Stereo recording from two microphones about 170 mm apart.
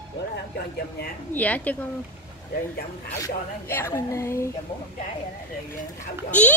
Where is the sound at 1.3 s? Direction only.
10° left (ahead or behind).